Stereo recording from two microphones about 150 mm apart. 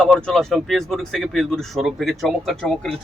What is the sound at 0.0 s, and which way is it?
Speech, 5° left (ahead or behind).